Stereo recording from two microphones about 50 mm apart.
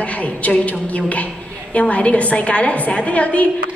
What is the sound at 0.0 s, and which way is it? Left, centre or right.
A woman's voice, left.